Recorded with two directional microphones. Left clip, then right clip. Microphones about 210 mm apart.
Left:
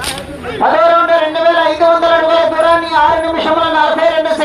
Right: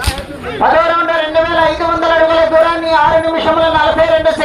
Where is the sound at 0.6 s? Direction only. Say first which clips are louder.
Left 1 dB; 5° right (ahead or behind).